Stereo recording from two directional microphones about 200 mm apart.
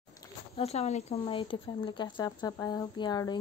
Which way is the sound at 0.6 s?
30° left (ahead or behind).